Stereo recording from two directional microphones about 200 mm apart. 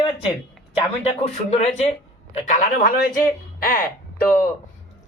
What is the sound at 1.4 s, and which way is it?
Speech, 35° left (ahead or behind).